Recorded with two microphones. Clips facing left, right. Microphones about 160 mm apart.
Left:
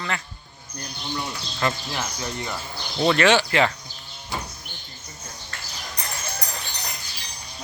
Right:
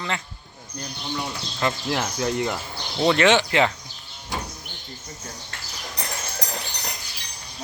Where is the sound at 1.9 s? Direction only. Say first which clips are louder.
Right 6 dB; 80° right.